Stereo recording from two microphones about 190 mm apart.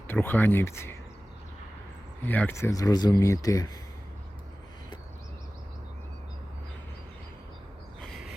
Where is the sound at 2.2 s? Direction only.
10° left (ahead or behind).